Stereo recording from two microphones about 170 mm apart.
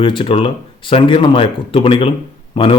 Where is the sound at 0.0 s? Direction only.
30° left (ahead or behind).